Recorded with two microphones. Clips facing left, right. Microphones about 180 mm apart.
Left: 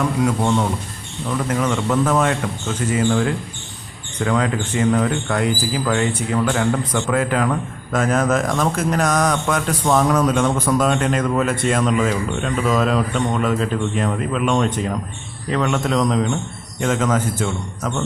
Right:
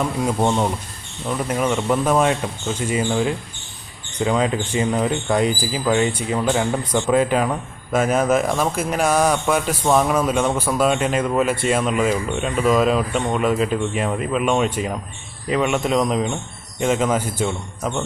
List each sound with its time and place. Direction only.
0.0 s speech: 25° right (ahead or behind); by 17.4 s 10° right (ahead or behind)